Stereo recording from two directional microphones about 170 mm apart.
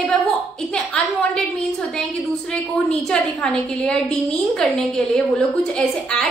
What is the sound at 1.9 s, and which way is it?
A woman's voice, 5° left (ahead or behind).